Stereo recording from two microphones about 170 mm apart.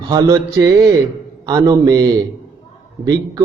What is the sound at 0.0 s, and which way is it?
A man's voice, 25° right (ahead or behind).